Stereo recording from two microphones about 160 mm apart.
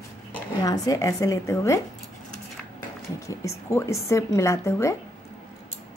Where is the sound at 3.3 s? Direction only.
20° left (ahead or behind).